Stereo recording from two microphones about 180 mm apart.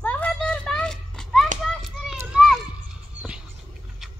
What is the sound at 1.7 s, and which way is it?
Children playing, centre (ahead or behind).